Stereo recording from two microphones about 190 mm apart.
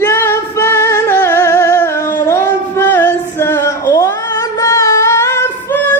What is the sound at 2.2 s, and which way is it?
Music, 15° left (ahead or behind).